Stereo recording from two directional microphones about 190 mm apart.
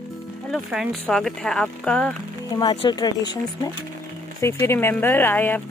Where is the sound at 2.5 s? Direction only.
25° left (ahead or behind).